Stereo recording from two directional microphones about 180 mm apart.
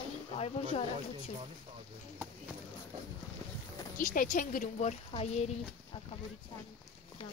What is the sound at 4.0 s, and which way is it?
Speech, 45° left (ahead or behind).